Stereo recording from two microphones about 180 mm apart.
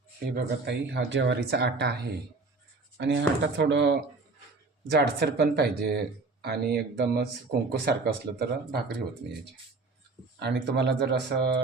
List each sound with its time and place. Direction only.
0.3 s speech: 70° right (ahead or behind)
3.0 s speech: 90° right; by 3.9 s 75° right (ahead or behind)
4.9 s speech: 60° right (ahead or behind)
10.4 s speech: 70° right (ahead or behind)